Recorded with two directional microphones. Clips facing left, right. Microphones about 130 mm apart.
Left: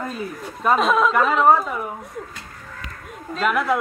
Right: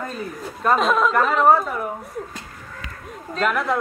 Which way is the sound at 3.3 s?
5° left (ahead or behind).